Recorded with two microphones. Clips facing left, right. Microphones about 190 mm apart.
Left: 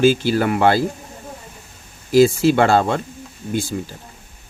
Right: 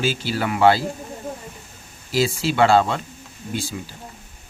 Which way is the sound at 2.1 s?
50° left (ahead or behind).